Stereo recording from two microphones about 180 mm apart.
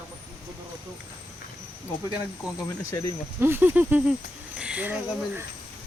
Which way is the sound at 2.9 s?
15° left (ahead or behind).